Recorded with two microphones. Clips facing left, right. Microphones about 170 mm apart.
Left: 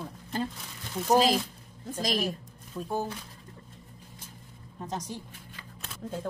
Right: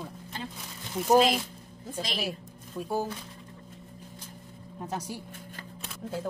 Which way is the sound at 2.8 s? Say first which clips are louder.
Right 1 dB; 10° right (ahead or behind).